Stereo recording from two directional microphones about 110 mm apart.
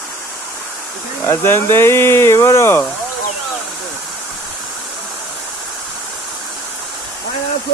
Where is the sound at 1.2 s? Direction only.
20° left (ahead or behind).